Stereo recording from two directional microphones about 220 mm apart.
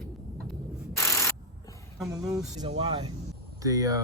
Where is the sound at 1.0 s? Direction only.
15° left (ahead or behind).